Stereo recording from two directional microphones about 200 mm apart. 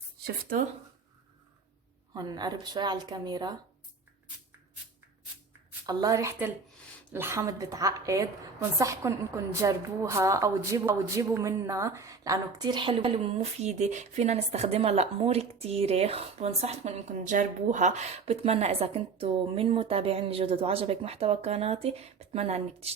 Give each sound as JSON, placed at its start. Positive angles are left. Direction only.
{"t": 2.1, "sound": "a woman's voice", "side_deg": -20}
{"t": 5.8, "sound": "a woman's voice", "side_deg": -20}